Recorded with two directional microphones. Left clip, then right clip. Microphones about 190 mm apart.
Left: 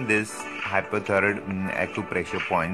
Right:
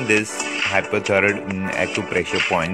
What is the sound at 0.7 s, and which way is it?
Speech, 5° right (ahead or behind).